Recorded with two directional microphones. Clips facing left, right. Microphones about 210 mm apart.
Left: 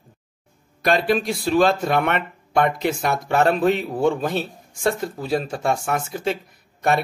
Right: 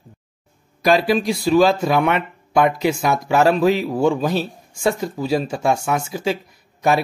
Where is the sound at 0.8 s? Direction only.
Centre (ahead or behind).